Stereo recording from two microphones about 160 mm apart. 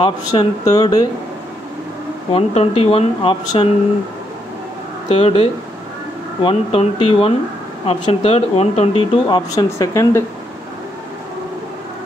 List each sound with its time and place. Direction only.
0.0 s speech: 25° left (ahead or behind)
2.3 s speech: 40° left (ahead or behind)
5.1 s speech: 35° left (ahead or behind)
9.5 s speech: 20° left (ahead or behind)